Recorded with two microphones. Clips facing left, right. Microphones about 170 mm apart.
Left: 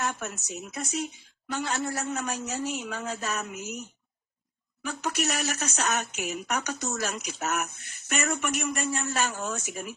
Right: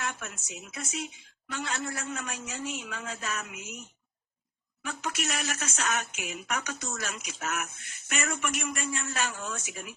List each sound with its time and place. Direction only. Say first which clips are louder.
0.2 s speech: left 6 dB; 40° left (ahead or behind)
4.8 s speech: left 4 dB; 40° left (ahead or behind)